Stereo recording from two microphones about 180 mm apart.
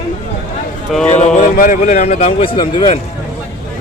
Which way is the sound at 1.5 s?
50° left (ahead or behind).